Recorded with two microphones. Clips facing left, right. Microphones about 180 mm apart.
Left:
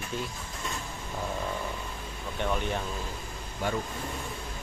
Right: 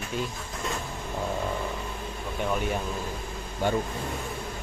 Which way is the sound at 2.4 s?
5° right (ahead or behind).